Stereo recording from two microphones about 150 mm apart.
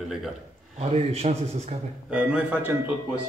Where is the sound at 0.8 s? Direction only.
45° right (ahead or behind).